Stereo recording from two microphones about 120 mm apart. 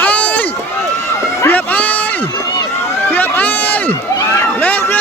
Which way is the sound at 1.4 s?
15° left (ahead or behind).